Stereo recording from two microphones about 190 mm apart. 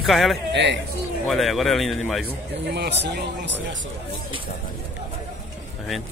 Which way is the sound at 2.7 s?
65° right (ahead or behind).